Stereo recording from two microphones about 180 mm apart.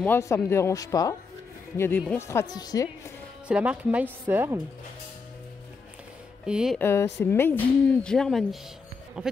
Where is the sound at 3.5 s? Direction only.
5° right (ahead or behind).